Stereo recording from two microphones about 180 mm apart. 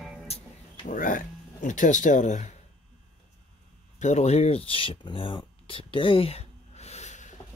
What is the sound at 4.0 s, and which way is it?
Speech, 40° left (ahead or behind).